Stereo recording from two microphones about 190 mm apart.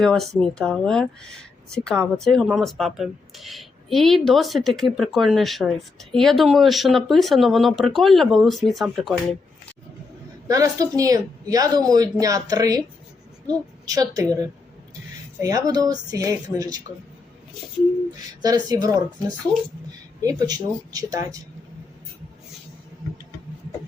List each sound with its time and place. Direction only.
0.0 s speech: 5° left (ahead or behind)
10.5 s speech: 20° right (ahead or behind)
18.4 s speech: 20° right (ahead or behind)
20.2 s speech: 20° right (ahead or behind)